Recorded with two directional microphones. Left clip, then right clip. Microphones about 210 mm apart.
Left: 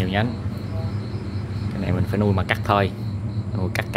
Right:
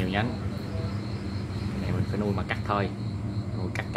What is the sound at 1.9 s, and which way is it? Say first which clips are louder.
Speech: left 8 dB; 40° left (ahead or behind).